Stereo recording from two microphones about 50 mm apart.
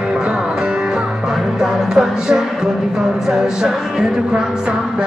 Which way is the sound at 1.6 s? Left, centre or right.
Centre.